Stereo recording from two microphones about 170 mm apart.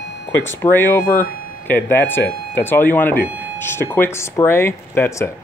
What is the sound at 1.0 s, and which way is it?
Speech, 55° left (ahead or behind).